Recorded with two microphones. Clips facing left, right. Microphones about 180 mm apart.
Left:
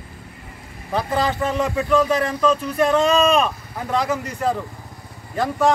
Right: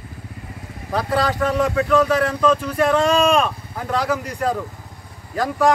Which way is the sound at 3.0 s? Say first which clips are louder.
Even; 10° right (ahead or behind).